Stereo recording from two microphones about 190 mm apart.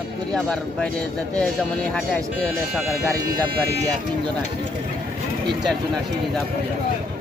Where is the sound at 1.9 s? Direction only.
5° left (ahead or behind).